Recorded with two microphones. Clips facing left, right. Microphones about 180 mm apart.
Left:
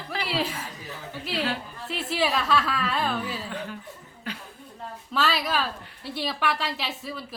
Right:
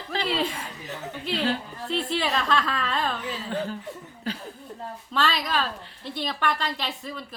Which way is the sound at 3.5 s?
35° right (ahead or behind).